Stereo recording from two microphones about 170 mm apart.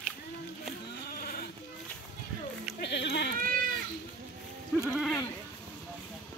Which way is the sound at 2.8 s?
90° left.